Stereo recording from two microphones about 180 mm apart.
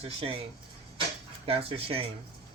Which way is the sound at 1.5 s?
30° right (ahead or behind).